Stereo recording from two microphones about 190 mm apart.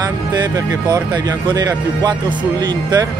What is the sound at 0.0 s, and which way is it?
Speech, 20° right (ahead or behind).